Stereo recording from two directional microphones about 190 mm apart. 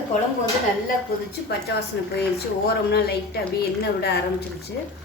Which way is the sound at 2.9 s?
55° left (ahead or behind).